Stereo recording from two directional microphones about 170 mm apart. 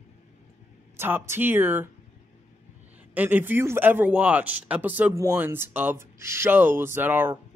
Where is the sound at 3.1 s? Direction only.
10° right (ahead or behind).